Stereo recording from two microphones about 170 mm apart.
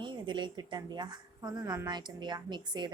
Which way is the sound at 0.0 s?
25° right (ahead or behind).